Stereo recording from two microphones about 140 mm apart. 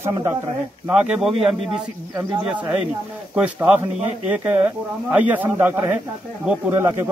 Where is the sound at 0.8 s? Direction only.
10° right (ahead or behind).